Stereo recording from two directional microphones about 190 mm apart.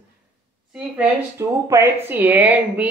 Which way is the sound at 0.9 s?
10° right (ahead or behind).